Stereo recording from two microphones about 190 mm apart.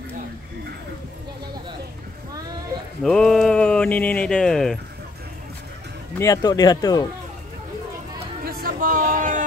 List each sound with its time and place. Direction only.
3.0 s speech: centre (ahead or behind)
6.1 s speech: 20° left (ahead or behind)
8.5 s a sound: 50° right (ahead or behind)